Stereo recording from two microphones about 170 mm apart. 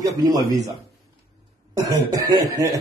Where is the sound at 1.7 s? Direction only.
20° right (ahead or behind).